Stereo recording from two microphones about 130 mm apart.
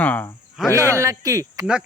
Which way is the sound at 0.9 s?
25° right (ahead or behind).